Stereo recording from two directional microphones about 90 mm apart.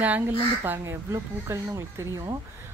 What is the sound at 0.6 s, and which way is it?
Speech, 30° right (ahead or behind).